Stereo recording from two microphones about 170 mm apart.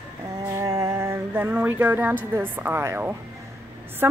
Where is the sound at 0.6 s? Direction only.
20° right (ahead or behind).